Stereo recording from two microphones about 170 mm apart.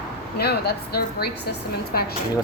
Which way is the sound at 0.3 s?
70° left (ahead or behind).